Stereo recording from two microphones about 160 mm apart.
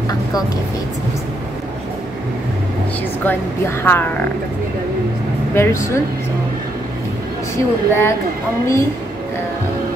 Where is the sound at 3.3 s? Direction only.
15° left (ahead or behind).